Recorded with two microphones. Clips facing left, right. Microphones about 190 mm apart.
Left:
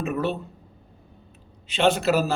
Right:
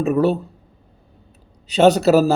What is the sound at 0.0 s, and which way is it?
Speech, 35° right (ahead or behind).